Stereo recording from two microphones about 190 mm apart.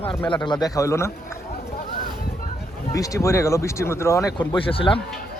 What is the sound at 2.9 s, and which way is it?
Speech, 15° left (ahead or behind).